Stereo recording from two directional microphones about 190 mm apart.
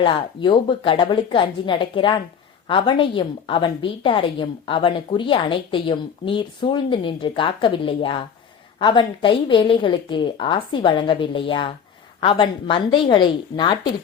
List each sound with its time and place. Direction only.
0.0 s a woman's voice: 25° left (ahead or behind)